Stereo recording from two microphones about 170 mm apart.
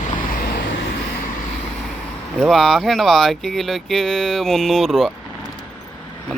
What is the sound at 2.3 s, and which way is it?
Speech, centre (ahead or behind).